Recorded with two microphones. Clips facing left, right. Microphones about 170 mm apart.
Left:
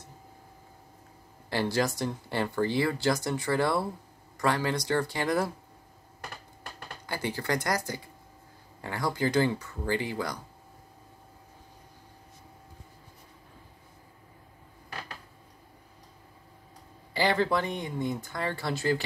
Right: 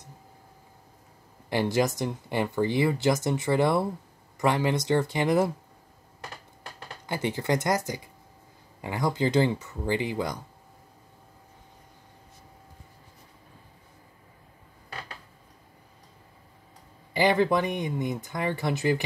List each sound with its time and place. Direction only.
1.5 s speech: 20° right (ahead or behind)
7.1 s speech: 20° right (ahead or behind)
17.1 s speech: 15° right (ahead or behind)